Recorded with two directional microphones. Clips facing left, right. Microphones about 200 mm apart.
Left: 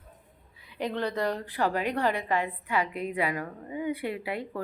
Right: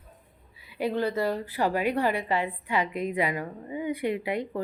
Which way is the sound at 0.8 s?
5° right (ahead or behind).